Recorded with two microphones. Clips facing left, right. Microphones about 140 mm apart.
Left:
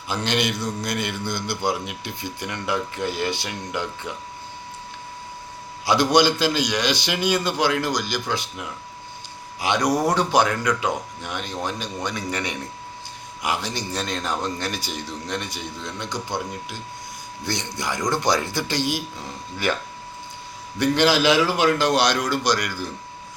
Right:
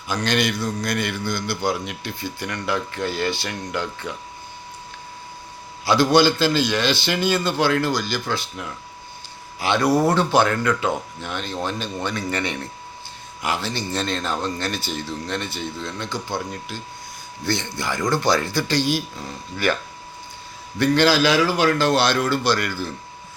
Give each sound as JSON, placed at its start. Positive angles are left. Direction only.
{"t": 0.1, "sound": "speech", "side_deg": 25}
{"t": 5.8, "sound": "a man's voice", "side_deg": 20}
{"t": 20.7, "sound": "a man's voice", "side_deg": 15}